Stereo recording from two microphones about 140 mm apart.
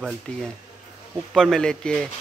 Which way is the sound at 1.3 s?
5° left (ahead or behind).